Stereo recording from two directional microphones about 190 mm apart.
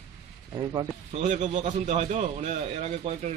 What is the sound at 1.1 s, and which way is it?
A man's voice, 40° right (ahead or behind).